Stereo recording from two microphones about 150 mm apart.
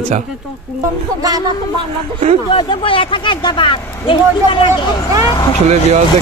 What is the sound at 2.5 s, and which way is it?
Speech, 35° left (ahead or behind).